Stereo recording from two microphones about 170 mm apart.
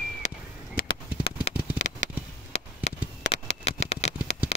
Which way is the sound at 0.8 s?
55° left (ahead or behind).